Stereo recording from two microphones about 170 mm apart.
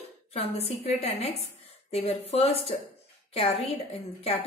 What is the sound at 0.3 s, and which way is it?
A woman's voice, 35° left (ahead or behind).